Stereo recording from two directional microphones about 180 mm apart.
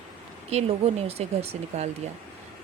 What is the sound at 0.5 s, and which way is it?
Speech, 35° right (ahead or behind).